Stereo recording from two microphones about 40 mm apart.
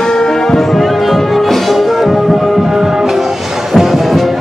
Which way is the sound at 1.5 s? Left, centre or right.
Centre.